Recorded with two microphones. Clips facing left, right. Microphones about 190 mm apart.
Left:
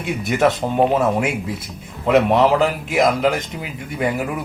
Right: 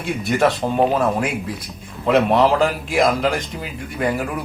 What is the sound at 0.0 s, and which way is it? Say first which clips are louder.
A man's voice: even; 15° left (ahead or behind).